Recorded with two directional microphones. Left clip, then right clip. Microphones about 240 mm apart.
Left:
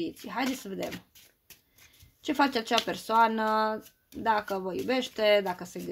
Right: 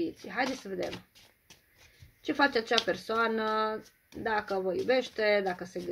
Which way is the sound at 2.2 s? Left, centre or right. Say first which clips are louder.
Even; left.